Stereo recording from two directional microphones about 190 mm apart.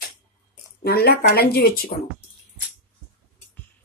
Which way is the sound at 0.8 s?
55° left (ahead or behind).